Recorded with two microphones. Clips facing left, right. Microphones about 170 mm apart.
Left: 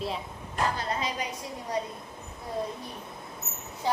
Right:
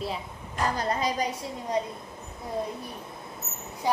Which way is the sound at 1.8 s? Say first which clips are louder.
Right 3 dB; 25° right (ahead or behind).